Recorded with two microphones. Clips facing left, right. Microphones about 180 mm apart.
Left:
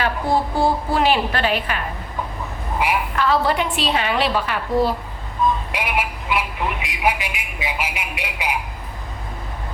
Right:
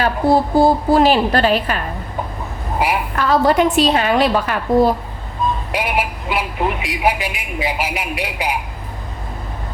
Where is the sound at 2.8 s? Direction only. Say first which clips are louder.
Right 2 dB; 45° right (ahead or behind).